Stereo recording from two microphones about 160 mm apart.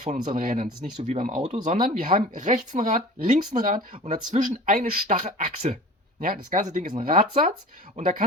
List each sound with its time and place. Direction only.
0.0 s speech: 50° right (ahead or behind)